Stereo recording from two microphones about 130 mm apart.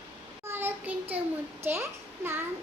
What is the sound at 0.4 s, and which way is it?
Child singing, 15° right (ahead or behind).